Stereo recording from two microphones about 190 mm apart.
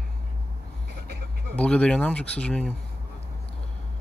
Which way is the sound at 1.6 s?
5° left (ahead or behind).